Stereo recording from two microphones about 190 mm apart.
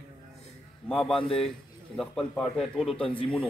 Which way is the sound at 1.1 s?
30° left (ahead or behind).